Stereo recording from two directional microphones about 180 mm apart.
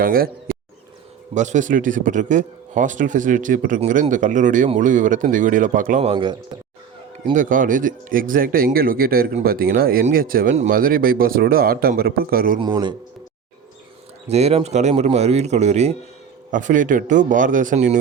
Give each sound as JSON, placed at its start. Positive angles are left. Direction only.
{"t": 0.0, "sound": "speech", "side_deg": -55}
{"t": 1.3, "sound": "speech", "side_deg": -40}
{"t": 7.3, "sound": "speech", "side_deg": -45}
{"t": 12.5, "sound": "a man's voice", "side_deg": -25}
{"t": 14.3, "sound": "speech", "side_deg": -35}